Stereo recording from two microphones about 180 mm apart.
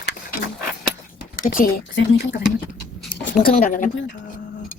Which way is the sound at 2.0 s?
70° left (ahead or behind).